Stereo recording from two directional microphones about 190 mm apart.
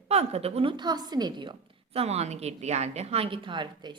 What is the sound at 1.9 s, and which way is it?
A woman's voice, 35° right (ahead or behind).